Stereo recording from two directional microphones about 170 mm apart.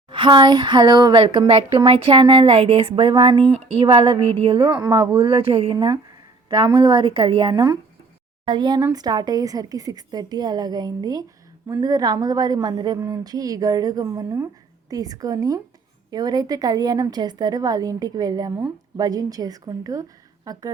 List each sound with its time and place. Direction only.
0.1 s a woman's voice: 30° right (ahead or behind)